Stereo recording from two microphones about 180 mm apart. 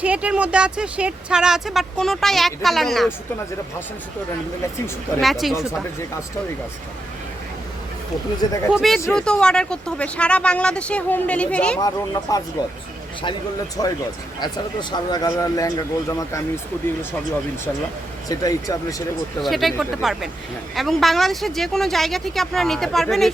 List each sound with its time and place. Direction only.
0.0 s speech: 5° right (ahead or behind)
5.2 s speech: centre (ahead or behind)
8.7 s speech: centre (ahead or behind)
11.8 s speech: 20° left (ahead or behind)
13.8 s speech: 25° left (ahead or behind)
18.3 s speech: 20° left (ahead or behind)
19.4 s speech: centre (ahead or behind)